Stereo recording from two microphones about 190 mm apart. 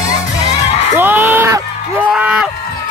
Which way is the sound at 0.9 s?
10° right (ahead or behind).